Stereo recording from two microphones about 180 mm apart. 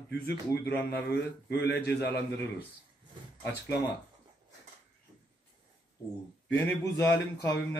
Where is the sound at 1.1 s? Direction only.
65° left (ahead or behind).